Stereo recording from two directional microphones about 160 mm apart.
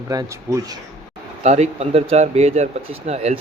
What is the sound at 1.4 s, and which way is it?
Speech, 45° right (ahead or behind).